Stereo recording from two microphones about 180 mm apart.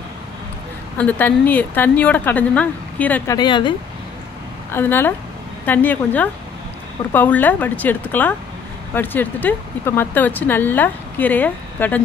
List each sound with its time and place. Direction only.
0.9 s speech: 10° left (ahead or behind)
3.3 s speech: 25° left (ahead or behind)
4.7 s speech: 10° left (ahead or behind)